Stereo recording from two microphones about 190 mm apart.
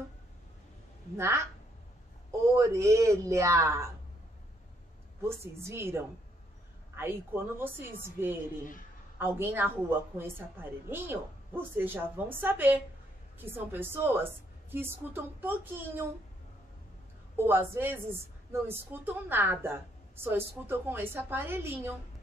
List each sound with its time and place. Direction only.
1.1 s a woman's voice: 15° right (ahead or behind)
2.5 s a woman's voice: 15° right (ahead or behind)
5.2 s a woman's voice: 15° right (ahead or behind)
17.4 s a woman's voice: 10° right (ahead or behind)